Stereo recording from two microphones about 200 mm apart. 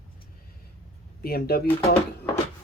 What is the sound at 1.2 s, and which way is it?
Speech, 50° left (ahead or behind).